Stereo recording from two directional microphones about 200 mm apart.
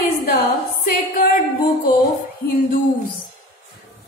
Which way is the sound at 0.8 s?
40° left (ahead or behind).